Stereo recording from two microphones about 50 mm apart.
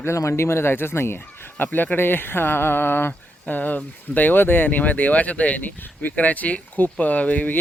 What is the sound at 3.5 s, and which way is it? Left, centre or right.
Speech, left.